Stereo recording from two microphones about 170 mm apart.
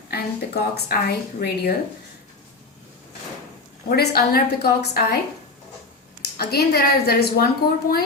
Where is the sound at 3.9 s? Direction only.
65° left (ahead or behind).